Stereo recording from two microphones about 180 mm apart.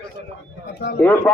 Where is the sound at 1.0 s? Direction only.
10° left (ahead or behind).